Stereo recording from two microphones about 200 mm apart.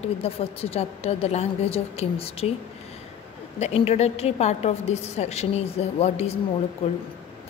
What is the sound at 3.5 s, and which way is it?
A woman's voice, 30° left (ahead or behind).